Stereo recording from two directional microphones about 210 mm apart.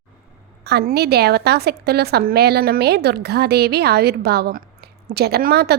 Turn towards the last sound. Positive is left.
turn(degrees=-50)  # may be behind; listen again after turning